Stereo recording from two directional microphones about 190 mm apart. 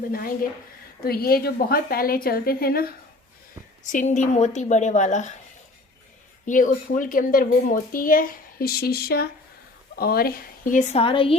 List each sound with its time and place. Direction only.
0.1 s speech: 50° left (ahead or behind)
3.9 s a woman's voice: 40° left (ahead or behind)
6.4 s speech: 45° left (ahead or behind); by 11.3 s 25° left (ahead or behind)